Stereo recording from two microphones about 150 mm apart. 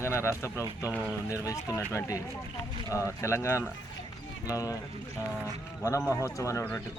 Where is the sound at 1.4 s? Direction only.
20° left (ahead or behind).